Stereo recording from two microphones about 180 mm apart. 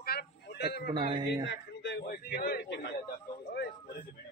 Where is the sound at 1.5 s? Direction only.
70° left (ahead or behind).